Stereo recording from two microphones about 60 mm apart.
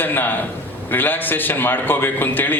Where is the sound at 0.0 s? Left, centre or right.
Left.